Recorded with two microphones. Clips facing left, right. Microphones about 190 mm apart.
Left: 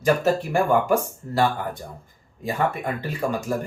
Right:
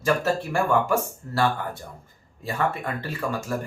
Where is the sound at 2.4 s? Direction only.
15° left (ahead or behind).